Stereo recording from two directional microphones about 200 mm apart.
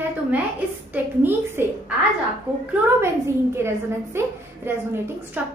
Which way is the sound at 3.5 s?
10° right (ahead or behind).